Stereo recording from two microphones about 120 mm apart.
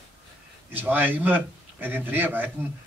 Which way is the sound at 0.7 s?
15° right (ahead or behind).